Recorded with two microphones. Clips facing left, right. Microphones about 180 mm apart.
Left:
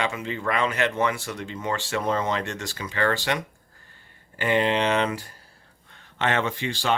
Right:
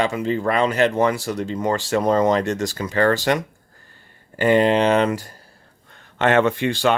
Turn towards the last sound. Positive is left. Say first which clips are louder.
# right 8 dB
turn(degrees=-55)  # may be behind; listen again after turning